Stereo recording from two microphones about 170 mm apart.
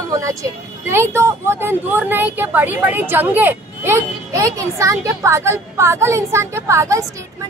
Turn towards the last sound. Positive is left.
turn(degrees=-15)  # may be behind; listen again after turning